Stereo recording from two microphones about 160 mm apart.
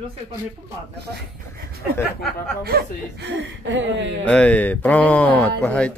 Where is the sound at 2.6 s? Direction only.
80° right.